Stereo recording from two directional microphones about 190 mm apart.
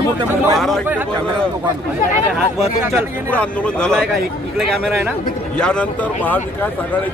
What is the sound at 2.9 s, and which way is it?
Speech, 5° left (ahead or behind).